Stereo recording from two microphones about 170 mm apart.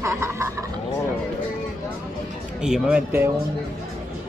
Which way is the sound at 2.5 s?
5° right (ahead or behind).